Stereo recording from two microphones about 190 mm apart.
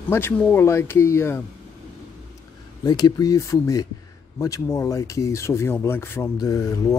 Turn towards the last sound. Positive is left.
turn(degrees=20)  # may be behind; listen again after turning